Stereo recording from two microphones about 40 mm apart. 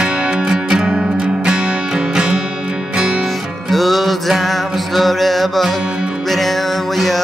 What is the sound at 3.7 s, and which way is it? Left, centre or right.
Music, centre.